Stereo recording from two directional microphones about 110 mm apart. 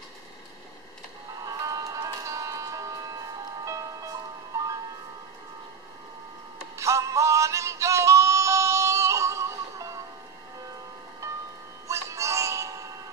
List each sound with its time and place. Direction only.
1.4 s a sound: 35° right (ahead or behind)
6.8 s synthetic singing: 30° right (ahead or behind)
11.9 s music: 25° right (ahead or behind)